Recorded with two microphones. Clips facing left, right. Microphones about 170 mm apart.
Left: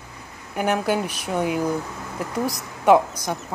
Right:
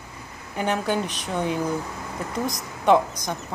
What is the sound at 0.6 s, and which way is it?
Speech, 10° left (ahead or behind).